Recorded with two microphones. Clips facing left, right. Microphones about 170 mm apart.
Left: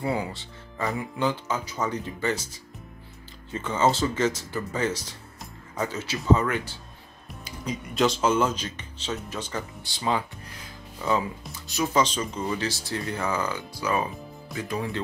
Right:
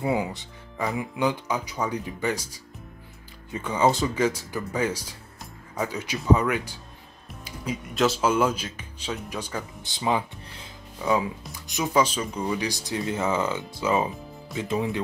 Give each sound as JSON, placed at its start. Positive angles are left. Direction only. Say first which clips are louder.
{"t": 0.0, "sound": "speech", "louder": "right 2 dB", "side_deg": -15}